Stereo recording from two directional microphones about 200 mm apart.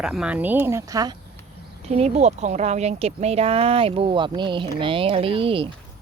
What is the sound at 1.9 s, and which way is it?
Speech, 30° right (ahead or behind).